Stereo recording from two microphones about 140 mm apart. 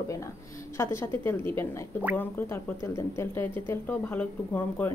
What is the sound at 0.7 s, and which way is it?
A woman's voice, 20° left (ahead or behind).